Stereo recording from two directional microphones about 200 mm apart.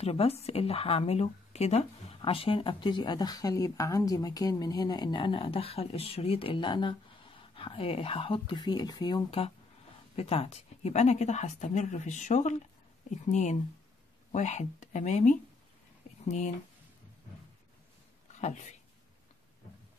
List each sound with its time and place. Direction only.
0.0 s a woman's voice: 30° left (ahead or behind)
18.3 s speech: 35° left (ahead or behind)